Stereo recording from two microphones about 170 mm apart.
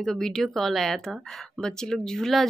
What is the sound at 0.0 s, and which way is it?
Speech, centre (ahead or behind).